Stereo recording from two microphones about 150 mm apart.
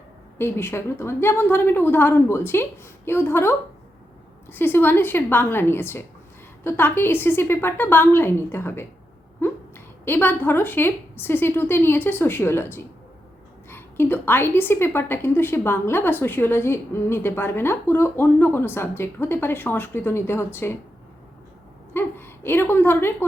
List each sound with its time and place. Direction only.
0.3 s a woman's voice: 15° left (ahead or behind)
4.5 s a woman's voice: 15° left (ahead or behind)
21.9 s a woman's voice: 15° left (ahead or behind)